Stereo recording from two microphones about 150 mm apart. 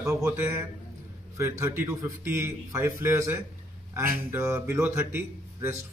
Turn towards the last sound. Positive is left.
turn(degrees=-15)  # may be behind; listen again after turning